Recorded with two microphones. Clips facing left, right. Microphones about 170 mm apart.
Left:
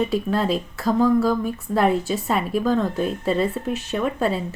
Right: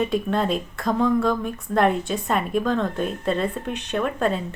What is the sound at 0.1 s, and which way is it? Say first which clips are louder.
A woman's voice: left 1 dB; 5° left (ahead or behind).